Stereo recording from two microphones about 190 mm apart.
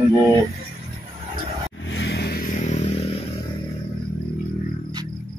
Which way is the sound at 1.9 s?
65° left (ahead or behind).